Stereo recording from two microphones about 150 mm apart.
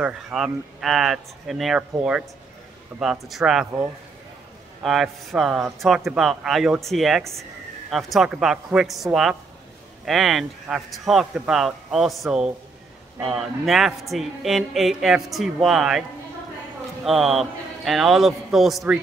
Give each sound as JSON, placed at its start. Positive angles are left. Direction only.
{"t": 0.0, "sound": "speech", "side_deg": -5}
{"t": 4.8, "sound": "speech", "side_deg": 0}
{"t": 17.0, "sound": "speech", "side_deg": 0}